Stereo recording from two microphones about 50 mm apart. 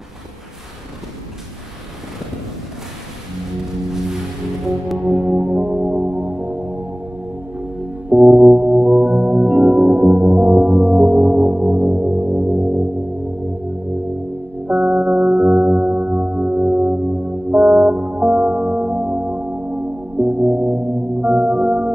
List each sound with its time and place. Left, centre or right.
5.0 s music: right
14.7 s music: right